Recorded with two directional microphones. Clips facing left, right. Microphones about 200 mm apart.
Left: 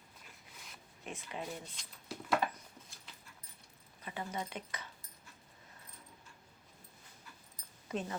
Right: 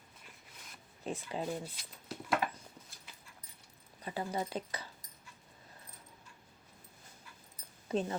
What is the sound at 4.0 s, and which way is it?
Speech, 35° right (ahead or behind).